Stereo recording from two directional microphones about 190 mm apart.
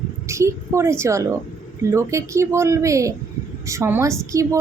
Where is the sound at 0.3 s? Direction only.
15° right (ahead or behind).